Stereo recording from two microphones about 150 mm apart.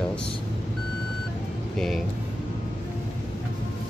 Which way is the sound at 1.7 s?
Centre (ahead or behind).